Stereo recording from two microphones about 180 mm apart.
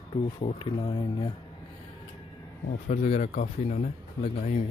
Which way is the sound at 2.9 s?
40° left (ahead or behind).